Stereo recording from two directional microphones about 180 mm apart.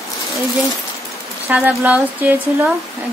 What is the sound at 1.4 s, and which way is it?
Speech, 10° right (ahead or behind).